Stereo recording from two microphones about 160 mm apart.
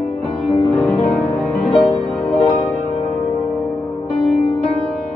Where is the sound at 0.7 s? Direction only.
Centre (ahead or behind).